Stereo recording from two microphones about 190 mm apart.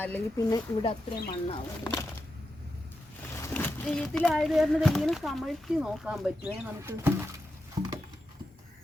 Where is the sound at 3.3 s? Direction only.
10° left (ahead or behind); by 7.1 s 10° right (ahead or behind).